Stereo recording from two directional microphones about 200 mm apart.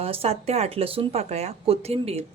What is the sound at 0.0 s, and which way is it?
A woman's voice, 30° right (ahead or behind).